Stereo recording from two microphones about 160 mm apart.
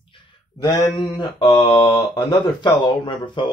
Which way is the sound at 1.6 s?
15° left (ahead or behind).